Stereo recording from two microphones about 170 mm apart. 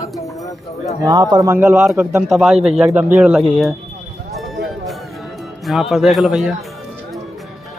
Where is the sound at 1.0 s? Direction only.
25° right (ahead or behind); by 3.7 s centre (ahead or behind).